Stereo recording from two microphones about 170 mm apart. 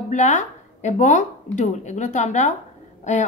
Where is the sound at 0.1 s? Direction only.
45° left (ahead or behind).